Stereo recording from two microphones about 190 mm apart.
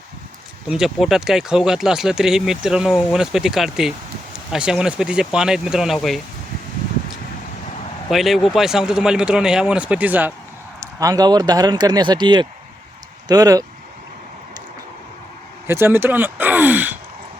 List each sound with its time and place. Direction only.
0.7 s speech: centre (ahead or behind)
8.1 s speech: centre (ahead or behind); by 13.7 s 20° right (ahead or behind)
15.6 s speech: 15° right (ahead or behind)